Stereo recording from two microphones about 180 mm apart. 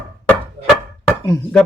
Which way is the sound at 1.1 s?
10° left (ahead or behind).